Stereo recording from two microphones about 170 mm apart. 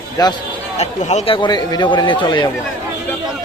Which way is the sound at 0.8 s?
40° left (ahead or behind).